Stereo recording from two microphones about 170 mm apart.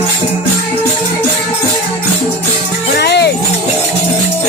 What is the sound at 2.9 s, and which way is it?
Music, 75° left (ahead or behind).